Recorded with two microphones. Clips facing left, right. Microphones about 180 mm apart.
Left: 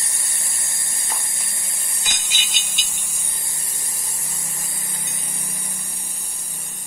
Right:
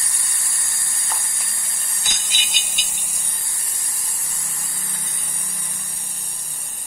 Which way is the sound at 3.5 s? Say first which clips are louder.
Left 2 dB; 25° left (ahead or behind).